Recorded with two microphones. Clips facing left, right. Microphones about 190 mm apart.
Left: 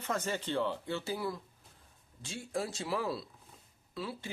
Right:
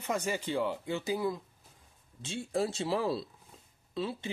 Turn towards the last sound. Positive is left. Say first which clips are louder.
# right 5 dB
turn(degrees=-25)  # may be behind; listen again after turning